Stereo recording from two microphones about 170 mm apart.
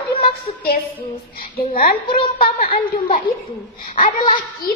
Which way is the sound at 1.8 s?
60° left (ahead or behind).